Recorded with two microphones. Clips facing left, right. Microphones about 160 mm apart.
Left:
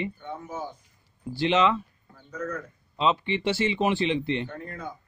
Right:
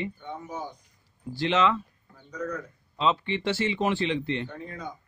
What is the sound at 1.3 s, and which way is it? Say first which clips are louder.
Speech: left 2 dB; 15° left (ahead or behind).